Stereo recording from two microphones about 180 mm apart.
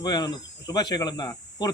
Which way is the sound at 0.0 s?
25° left (ahead or behind).